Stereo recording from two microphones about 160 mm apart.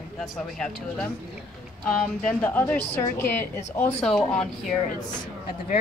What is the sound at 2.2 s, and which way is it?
A woman's voice, 5° left (ahead or behind).